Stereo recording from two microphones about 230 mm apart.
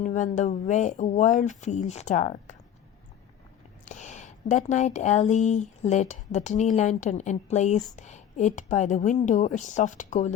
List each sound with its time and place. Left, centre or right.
0.0 s speech: left
3.8 s speech: left